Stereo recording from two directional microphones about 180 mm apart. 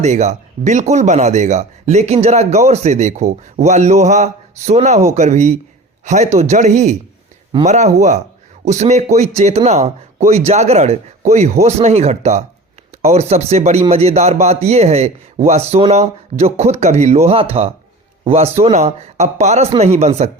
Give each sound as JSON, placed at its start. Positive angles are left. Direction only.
{"t": 0.0, "sound": "speech", "side_deg": -40}